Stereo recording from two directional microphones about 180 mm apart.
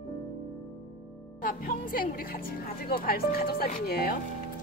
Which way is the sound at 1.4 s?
50° left (ahead or behind).